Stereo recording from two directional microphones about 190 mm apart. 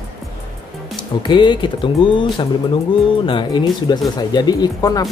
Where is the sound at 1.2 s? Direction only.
25° left (ahead or behind).